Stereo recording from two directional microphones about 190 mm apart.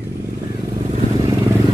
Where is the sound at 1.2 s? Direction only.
15° right (ahead or behind).